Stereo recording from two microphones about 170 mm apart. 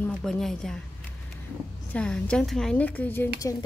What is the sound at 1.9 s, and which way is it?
Speech, 5° left (ahead or behind).